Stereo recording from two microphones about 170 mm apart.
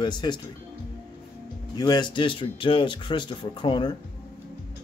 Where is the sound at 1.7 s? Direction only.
25° left (ahead or behind).